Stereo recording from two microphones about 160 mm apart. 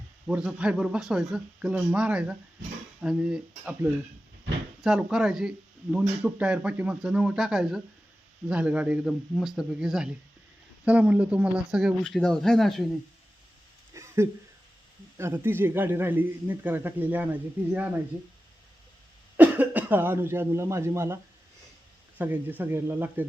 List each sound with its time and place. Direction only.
0.3 s speech: 5° right (ahead or behind)
4.8 s speech: 5° right (ahead or behind)
13.9 s a sound: 20° right (ahead or behind)
15.2 s speech: 15° right (ahead or behind)
19.4 s speech: 10° right (ahead or behind)
22.2 s speech: 10° right (ahead or behind)